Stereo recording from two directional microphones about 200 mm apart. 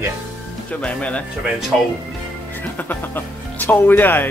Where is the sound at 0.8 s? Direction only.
5° left (ahead or behind).